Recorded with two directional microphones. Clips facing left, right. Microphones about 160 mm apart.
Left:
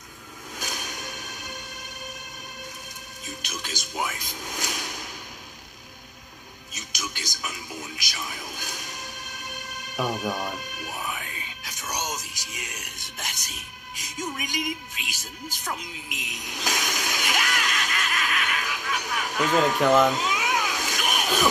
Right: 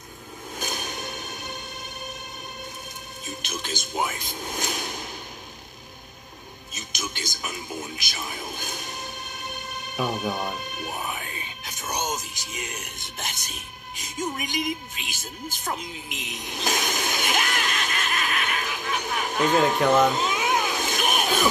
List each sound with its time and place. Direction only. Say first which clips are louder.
0.6 s music: right 3 dB; 30° right (ahead or behind)
3.4 s a sound: right 4 dB; 25° right (ahead or behind)
6.7 s music: right 2 dB; 25° right (ahead or behind)